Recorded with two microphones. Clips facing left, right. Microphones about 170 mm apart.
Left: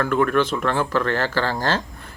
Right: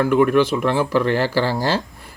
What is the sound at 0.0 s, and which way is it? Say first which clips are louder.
Speech: right 4 dB; 10° right (ahead or behind).